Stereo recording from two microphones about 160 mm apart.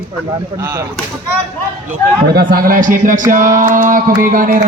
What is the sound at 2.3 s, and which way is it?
Mantra, 65° right (ahead or behind).